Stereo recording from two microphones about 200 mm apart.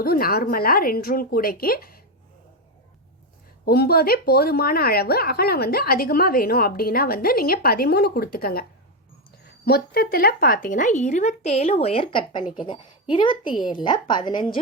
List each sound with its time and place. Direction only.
0.0 s speech: 50° left (ahead or behind)
3.7 s speech: 50° left (ahead or behind)
9.6 s a woman's voice: 50° left (ahead or behind); by 14.6 s 20° left (ahead or behind)